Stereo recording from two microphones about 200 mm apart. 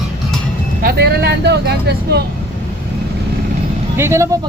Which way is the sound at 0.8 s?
55° right (ahead or behind).